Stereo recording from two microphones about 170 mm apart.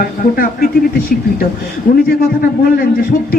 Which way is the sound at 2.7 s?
60° left (ahead or behind).